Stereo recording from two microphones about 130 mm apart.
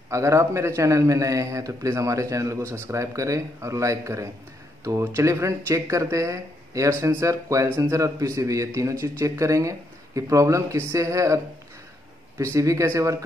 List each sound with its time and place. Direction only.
0.1 s speech: 25° right (ahead or behind)